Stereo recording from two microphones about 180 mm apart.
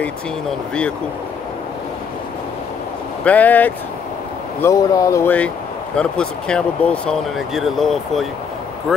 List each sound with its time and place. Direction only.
3.3 s speech: 10° left (ahead or behind)